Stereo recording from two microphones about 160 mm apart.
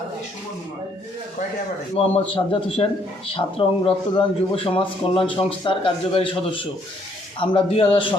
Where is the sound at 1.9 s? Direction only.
40° left (ahead or behind).